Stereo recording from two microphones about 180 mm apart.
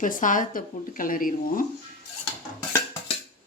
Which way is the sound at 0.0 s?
45° left (ahead or behind).